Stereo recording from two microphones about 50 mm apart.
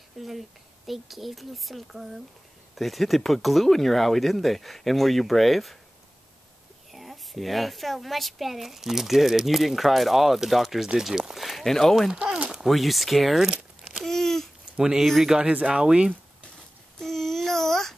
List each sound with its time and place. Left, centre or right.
0.2 s speech: centre
6.9 s speech: centre
14.0 s babbling: centre
14.8 s speech: centre
17.0 s child singing: centre